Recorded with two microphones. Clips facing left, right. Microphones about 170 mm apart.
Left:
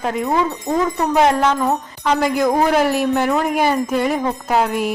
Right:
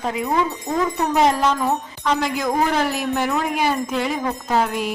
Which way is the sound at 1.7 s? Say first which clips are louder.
Left 3 dB; 10° left (ahead or behind).